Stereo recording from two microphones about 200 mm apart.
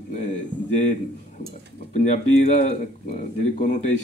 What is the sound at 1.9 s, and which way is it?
A man's voice, 35° left (ahead or behind).